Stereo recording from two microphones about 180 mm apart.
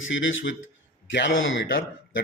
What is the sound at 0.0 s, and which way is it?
A man's voice, 90° left.